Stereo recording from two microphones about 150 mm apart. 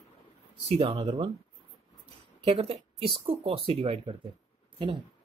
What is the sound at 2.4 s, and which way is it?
Speech, 45° right (ahead or behind).